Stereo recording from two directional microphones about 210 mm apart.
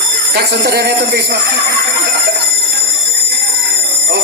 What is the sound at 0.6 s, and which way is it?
Speech, 50° right (ahead or behind).